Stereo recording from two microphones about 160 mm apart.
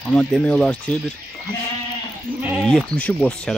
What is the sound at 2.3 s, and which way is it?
Sheep, 30° right (ahead or behind).